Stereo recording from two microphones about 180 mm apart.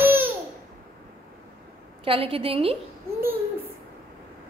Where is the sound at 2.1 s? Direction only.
30° right (ahead or behind).